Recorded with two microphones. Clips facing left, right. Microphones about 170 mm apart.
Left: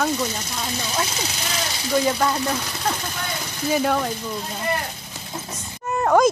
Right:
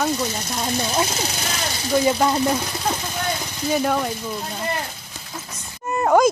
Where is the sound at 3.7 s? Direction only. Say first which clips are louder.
Even; 5° right (ahead or behind).